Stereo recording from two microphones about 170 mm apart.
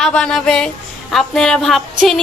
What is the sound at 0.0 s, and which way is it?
A woman's voice, 5° left (ahead or behind).